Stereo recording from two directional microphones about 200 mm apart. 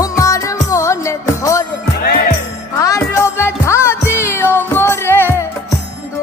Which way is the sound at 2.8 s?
15° left (ahead or behind).